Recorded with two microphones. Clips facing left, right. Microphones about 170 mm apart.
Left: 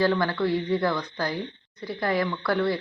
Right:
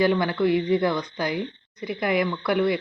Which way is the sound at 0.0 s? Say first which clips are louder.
Right 2 dB; 15° right (ahead or behind).